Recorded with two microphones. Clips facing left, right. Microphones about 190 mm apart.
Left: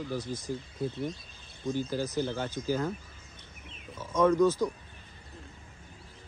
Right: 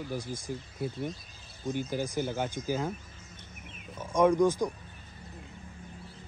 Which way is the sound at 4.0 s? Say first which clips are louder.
Even; 15° right (ahead or behind).